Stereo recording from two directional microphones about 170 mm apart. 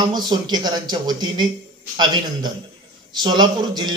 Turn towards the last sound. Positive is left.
turn(degrees=-25)  # may be behind; listen again after turning